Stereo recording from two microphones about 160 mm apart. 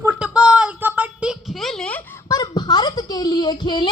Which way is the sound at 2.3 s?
25° left (ahead or behind).